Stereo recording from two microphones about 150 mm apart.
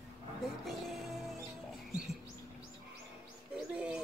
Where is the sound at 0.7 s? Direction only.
Centre (ahead or behind).